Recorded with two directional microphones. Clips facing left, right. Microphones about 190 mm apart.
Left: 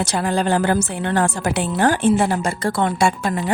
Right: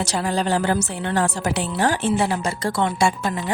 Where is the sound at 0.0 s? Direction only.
55° left (ahead or behind).